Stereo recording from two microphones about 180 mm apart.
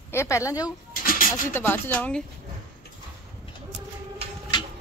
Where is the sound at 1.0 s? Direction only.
50° left (ahead or behind).